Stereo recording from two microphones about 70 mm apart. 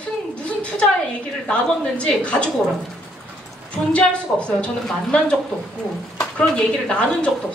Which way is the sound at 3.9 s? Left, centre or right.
Centre.